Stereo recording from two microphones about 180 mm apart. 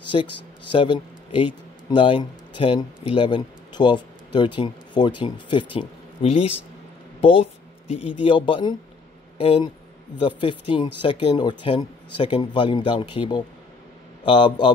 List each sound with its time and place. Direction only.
0.1 s speech: 30° left (ahead or behind)